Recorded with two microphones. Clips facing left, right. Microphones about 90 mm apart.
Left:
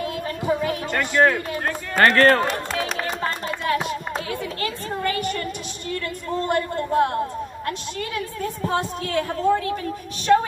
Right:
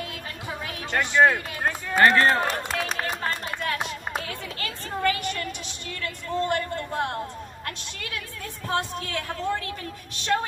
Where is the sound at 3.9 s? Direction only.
35° left (ahead or behind).